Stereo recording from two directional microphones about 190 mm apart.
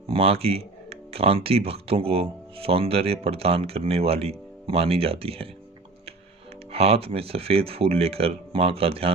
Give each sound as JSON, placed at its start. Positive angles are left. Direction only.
{"t": 0.1, "sound": "speech", "side_deg": -30}
{"t": 6.7, "sound": "speech", "side_deg": -30}